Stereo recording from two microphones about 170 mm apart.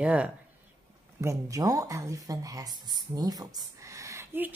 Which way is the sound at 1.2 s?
20° right (ahead or behind).